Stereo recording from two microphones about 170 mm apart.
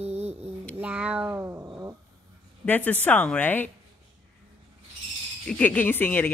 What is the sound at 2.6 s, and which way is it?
Speech, 10° left (ahead or behind).